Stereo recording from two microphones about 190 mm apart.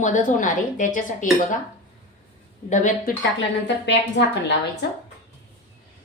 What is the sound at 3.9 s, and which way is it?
Speech, 70° left (ahead or behind).